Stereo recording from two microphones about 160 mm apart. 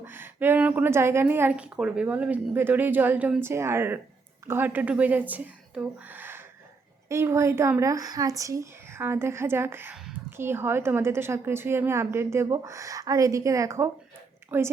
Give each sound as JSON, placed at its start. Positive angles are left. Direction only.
{"t": 0.0, "sound": "a woman's voice", "side_deg": -15}